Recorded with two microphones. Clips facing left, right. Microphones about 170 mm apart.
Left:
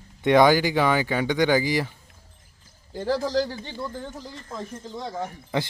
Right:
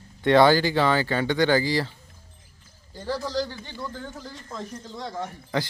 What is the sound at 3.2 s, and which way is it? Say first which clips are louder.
Speech: left 1 dB; 45° left (ahead or behind).